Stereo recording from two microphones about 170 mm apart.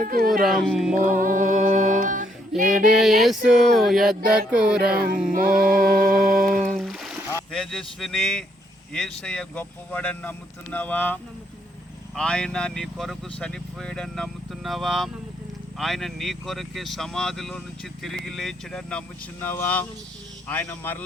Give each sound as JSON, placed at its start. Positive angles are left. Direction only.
{"t": 0.0, "sound": "music", "side_deg": -60}
{"t": 0.4, "sound": "speech", "side_deg": 0}
{"t": 0.9, "sound": "music", "side_deg": -50}
{"t": 2.6, "sound": "speech", "side_deg": -5}
{"t": 4.8, "sound": "music", "side_deg": -60}
{"t": 6.6, "sound": "music", "side_deg": 0}
{"t": 7.5, "sound": "speech", "side_deg": 0}